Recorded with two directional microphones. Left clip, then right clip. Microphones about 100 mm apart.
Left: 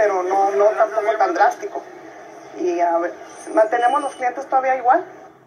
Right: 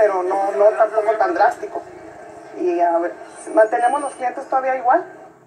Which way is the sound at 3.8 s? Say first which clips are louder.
Left 1 dB; 10° right (ahead or behind).